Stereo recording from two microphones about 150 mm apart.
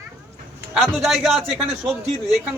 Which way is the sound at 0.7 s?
Centre (ahead or behind).